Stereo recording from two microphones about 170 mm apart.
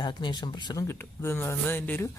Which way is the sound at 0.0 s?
25° left (ahead or behind).